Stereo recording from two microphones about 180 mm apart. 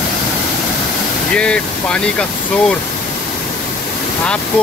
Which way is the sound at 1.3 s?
5° left (ahead or behind).